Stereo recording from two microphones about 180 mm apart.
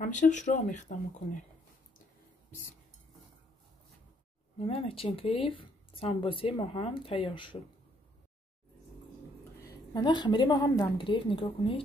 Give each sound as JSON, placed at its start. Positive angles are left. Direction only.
{"t": 0.0, "sound": "speech", "side_deg": 45}
{"t": 4.6, "sound": "speech", "side_deg": 35}
{"t": 9.6, "sound": "a woman's voice", "side_deg": 20}